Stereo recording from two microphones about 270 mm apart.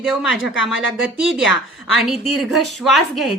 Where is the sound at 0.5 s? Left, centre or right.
Left.